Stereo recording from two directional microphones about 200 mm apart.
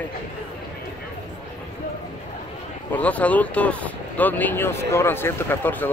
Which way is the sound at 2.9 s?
5° left (ahead or behind).